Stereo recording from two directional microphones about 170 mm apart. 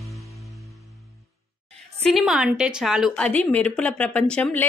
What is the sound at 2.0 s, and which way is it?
A woman's voice, centre (ahead or behind).